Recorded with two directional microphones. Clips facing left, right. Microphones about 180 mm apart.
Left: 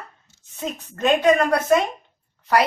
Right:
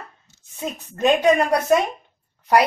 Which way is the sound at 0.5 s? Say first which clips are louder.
Even; 10° right (ahead or behind).